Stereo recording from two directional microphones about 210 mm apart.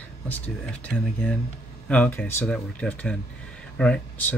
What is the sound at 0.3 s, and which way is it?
Speech, 5° left (ahead or behind).